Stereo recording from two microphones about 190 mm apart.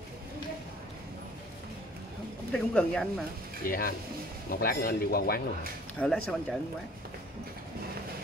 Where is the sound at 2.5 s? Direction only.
5° left (ahead or behind).